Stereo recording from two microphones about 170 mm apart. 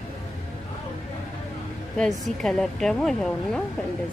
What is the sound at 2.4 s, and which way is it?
A woman's voice, 5° left (ahead or behind).